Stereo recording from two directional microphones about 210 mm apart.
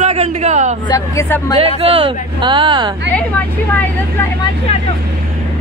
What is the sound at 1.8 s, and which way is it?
Speech, 25° right (ahead or behind).